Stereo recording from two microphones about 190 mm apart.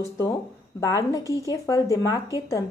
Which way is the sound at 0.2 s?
20° left (ahead or behind).